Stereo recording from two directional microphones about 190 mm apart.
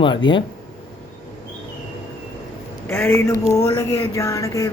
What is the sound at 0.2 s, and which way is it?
Speech, 25° left (ahead or behind).